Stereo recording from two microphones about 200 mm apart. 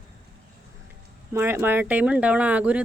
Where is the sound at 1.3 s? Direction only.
10° right (ahead or behind).